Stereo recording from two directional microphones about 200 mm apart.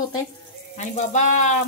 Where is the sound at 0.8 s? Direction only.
35° left (ahead or behind).